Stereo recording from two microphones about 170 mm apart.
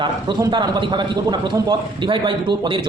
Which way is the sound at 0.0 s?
25° right (ahead or behind).